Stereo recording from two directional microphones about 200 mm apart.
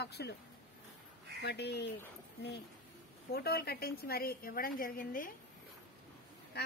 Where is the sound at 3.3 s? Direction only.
50° left (ahead or behind).